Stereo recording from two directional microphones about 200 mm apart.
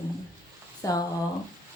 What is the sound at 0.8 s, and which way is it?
Speech, 20° left (ahead or behind).